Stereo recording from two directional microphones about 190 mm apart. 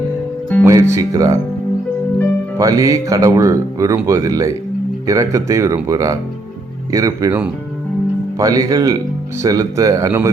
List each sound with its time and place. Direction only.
0.6 s speech: 15° right (ahead or behind)
2.6 s speech: 20° right (ahead or behind)
8.4 s speech: 15° right (ahead or behind)